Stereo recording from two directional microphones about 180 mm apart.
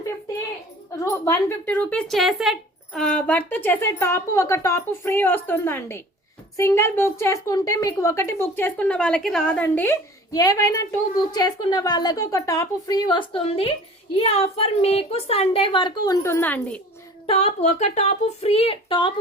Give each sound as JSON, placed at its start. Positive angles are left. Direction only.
{"t": 0.9, "sound": "a woman's voice", "side_deg": 15}
{"t": 16.2, "sound": "a woman's voice", "side_deg": 10}
{"t": 17.2, "sound": "speech", "side_deg": 35}